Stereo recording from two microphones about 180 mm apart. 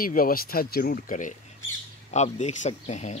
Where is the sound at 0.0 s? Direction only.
55° left (ahead or behind).